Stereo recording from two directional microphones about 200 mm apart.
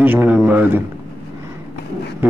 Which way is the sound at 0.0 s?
10° right (ahead or behind).